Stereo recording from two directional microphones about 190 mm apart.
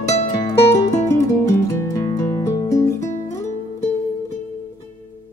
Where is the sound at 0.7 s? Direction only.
15° left (ahead or behind).